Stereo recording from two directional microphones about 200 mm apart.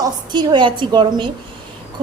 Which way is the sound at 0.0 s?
20° right (ahead or behind).